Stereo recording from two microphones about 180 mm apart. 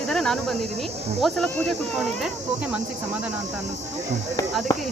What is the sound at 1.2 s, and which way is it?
Speech, centre (ahead or behind).